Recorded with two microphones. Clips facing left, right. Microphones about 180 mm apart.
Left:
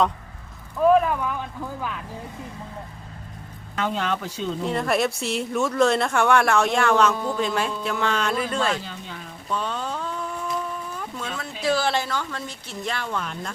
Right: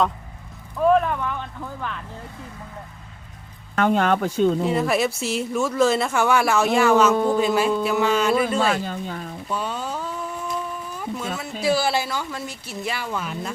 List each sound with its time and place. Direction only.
0.8 s speech: centre (ahead or behind)
3.8 s speech: 55° right (ahead or behind)
4.6 s speech: 5° right (ahead or behind)
8.7 s a sound: 50° right (ahead or behind)
9.5 s a sound: 10° right (ahead or behind)
11.6 s speech: 10° right (ahead or behind)